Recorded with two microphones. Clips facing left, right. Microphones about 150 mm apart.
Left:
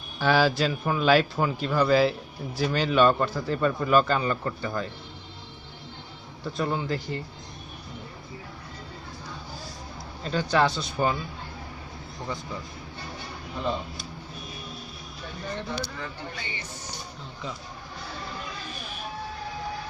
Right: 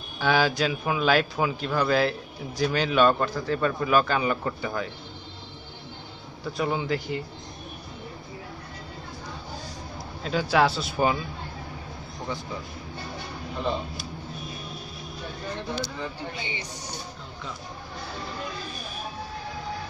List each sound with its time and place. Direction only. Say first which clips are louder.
0.2 s speech: left 1 dB; centre (ahead or behind)
6.4 s speech: right 1 dB; 5° right (ahead or behind)
10.2 s speech: right 1 dB; 5° right (ahead or behind)
16.0 s speech: right 3 dB; 15° right (ahead or behind)